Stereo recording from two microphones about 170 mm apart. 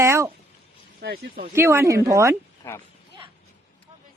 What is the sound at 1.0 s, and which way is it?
Speech, 65° right (ahead or behind).